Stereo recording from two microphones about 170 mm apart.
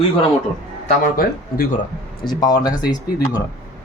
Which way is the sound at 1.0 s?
55° left (ahead or behind).